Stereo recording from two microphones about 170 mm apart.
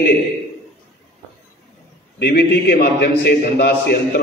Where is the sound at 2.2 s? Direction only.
70° left (ahead or behind).